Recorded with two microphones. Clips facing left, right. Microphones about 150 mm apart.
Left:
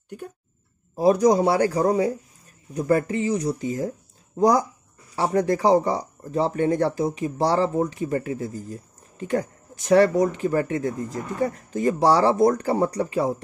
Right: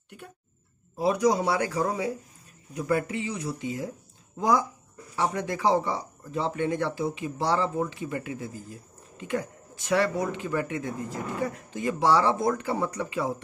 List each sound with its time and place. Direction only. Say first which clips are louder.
0.9 s speech: left 6 dB; 40° left (ahead or behind)